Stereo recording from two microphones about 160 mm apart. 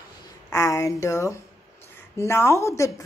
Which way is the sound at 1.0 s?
20° left (ahead or behind).